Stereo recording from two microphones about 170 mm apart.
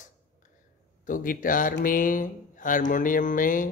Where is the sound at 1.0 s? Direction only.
55° left (ahead or behind).